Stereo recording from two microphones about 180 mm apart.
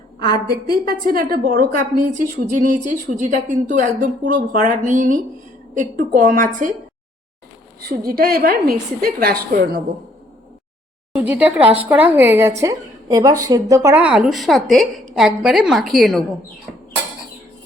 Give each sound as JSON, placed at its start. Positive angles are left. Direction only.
{"t": 0.2, "sound": "a woman's voice", "side_deg": -60}
{"t": 7.8, "sound": "a woman's voice", "side_deg": -55}
{"t": 11.2, "sound": "a woman's voice", "side_deg": -5}